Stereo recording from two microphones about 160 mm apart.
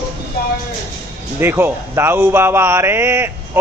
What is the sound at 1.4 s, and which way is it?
A man's voice, 15° right (ahead or behind).